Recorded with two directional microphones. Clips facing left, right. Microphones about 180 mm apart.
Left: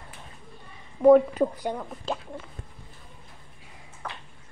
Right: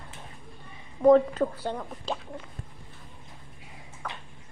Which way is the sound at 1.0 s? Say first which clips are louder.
Left 2 dB; 10° left (ahead or behind).